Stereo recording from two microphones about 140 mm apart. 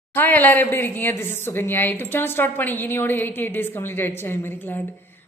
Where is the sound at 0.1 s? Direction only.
15° left (ahead or behind).